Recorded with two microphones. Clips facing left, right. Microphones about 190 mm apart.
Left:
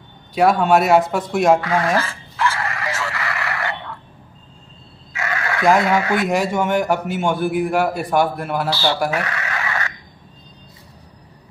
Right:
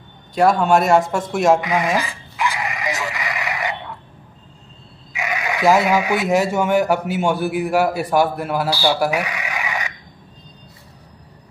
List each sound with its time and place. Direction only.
0.3 s speech: centre (ahead or behind)
1.6 s a sound: 15° right (ahead or behind)
5.1 s chicken: 15° right (ahead or behind)
6.2 s a man's voice: centre (ahead or behind)